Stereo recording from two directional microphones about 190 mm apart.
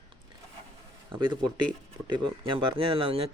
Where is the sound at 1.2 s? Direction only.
25° right (ahead or behind).